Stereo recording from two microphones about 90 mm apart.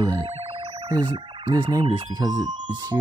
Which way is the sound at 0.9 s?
55° right (ahead or behind).